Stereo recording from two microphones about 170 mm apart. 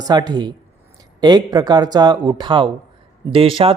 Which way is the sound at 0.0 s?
20° right (ahead or behind).